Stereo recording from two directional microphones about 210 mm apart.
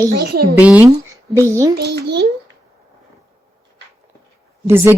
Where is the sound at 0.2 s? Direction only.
55° right (ahead or behind).